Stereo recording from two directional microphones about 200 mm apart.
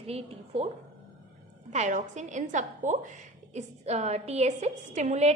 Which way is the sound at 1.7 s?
35° right (ahead or behind).